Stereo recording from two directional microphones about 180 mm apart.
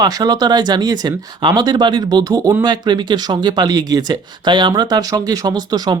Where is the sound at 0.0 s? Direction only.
20° right (ahead or behind).